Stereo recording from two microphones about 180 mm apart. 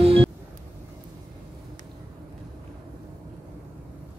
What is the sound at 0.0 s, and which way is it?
Vehicle, 30° right (ahead or behind).